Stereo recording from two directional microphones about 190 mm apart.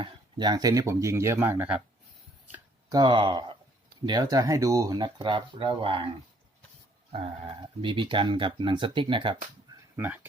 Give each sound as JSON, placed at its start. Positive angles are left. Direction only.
{"t": 0.0, "sound": "speech", "side_deg": -25}
{"t": 2.5, "sound": "speech", "side_deg": -20}
{"t": 7.1, "sound": "speech", "side_deg": -35}
{"t": 9.9, "sound": "speech", "side_deg": -10}